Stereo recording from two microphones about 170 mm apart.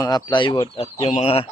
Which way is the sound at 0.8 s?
40° left (ahead or behind).